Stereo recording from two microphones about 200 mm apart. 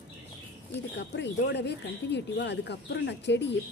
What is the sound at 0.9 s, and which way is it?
Speech, 60° left (ahead or behind).